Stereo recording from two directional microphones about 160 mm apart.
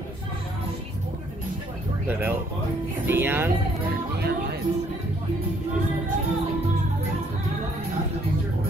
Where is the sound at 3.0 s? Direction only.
15° right (ahead or behind).